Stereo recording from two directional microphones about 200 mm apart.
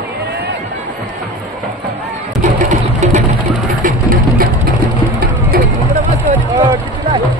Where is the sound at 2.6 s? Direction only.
35° right (ahead or behind).